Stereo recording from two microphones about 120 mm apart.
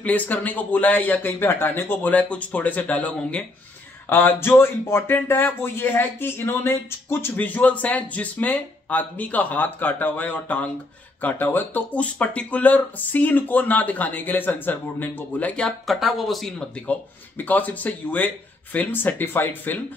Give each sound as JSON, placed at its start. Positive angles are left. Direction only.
{"t": 0.0, "sound": "speech", "side_deg": 10}